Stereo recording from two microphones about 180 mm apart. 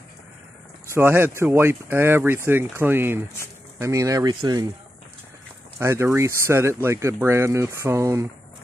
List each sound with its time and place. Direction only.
0.8 s speech: 15° right (ahead or behind)
5.8 s speech: 15° right (ahead or behind)